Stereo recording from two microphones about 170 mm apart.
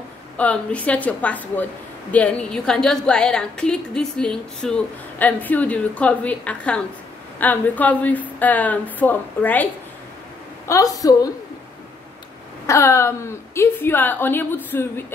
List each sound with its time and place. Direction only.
0.4 s a woman's voice: 10° left (ahead or behind)
10.7 s a woman's voice: 20° left (ahead or behind)
12.6 s a woman's voice: 15° left (ahead or behind)